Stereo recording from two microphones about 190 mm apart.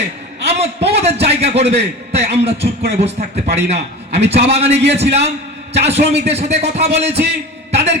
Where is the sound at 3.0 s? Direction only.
35° right (ahead or behind).